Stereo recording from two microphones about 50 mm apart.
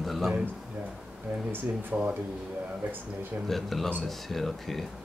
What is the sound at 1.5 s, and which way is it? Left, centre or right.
Speech, right.